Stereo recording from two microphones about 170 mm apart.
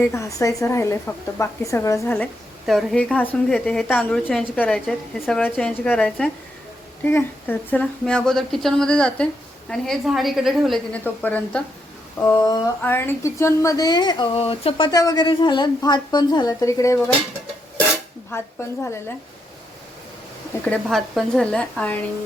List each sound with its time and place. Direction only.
0.0 s a woman's voice: 15° left (ahead or behind); by 11.0 s centre (ahead or behind)
11.0 s a woman's voice: 10° left (ahead or behind)
12.2 s speech: 20° left (ahead or behind)
14.8 s speech: 20° left (ahead or behind)
18.3 s a woman's voice: 15° left (ahead or behind)
20.7 s a woman's voice: centre (ahead or behind)